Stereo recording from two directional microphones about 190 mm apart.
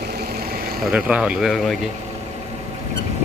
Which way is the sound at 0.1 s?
55° right (ahead or behind).